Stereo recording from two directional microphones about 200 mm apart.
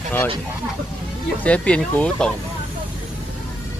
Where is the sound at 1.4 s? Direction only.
5° left (ahead or behind).